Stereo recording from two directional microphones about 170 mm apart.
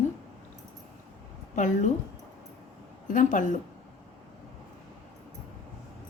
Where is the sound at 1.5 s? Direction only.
45° left (ahead or behind).